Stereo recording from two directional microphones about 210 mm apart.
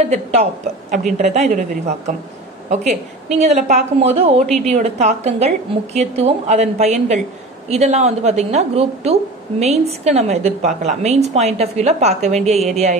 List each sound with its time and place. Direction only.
0.0 s a woman's voice: 30° right (ahead or behind)
2.7 s a woman's voice: 30° right (ahead or behind)